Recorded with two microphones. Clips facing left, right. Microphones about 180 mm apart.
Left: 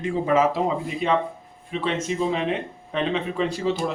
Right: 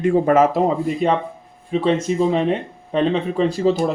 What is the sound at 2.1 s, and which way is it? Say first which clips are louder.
Speech: right 6 dB; 45° right (ahead or behind).